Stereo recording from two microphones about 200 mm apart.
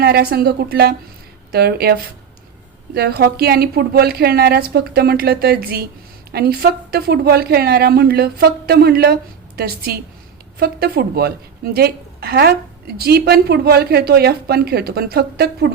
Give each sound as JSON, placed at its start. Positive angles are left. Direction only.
{"t": 0.0, "sound": "speech", "side_deg": -50}